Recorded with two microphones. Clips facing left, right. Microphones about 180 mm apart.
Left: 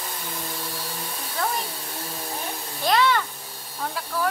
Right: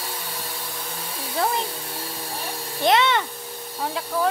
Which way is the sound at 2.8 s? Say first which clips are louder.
Right 2 dB; 20° right (ahead or behind).